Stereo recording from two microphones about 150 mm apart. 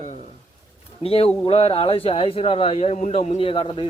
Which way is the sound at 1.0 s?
40° left (ahead or behind).